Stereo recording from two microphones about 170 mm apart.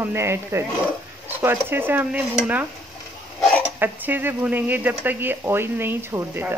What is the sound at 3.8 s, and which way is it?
Speech, 10° right (ahead or behind).